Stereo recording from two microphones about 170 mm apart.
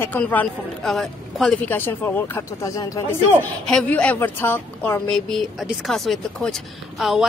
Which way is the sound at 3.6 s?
5° left (ahead or behind).